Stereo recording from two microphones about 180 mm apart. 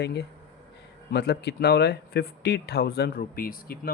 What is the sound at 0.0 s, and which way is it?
Speech, 65° left (ahead or behind).